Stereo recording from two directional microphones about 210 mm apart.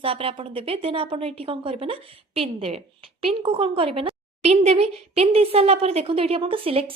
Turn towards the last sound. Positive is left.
turn(degrees=-25)  # may be behind; listen again after turning